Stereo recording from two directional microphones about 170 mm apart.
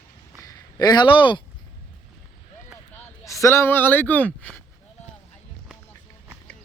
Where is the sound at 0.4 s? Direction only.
25° left (ahead or behind).